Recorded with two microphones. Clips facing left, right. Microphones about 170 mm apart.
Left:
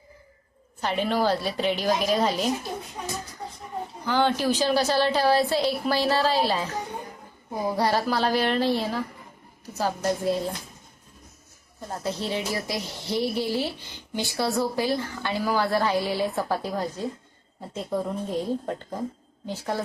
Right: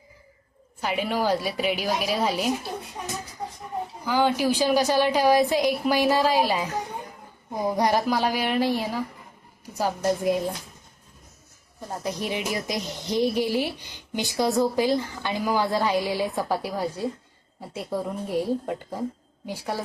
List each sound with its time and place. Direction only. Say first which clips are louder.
0.8 s speech: left 1 dB; 10° right (ahead or behind)
4.0 s speech: right 1 dB; 10° right (ahead or behind)
11.9 s speech: even; 15° right (ahead or behind)